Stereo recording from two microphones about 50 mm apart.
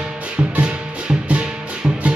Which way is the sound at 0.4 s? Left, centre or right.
Centre.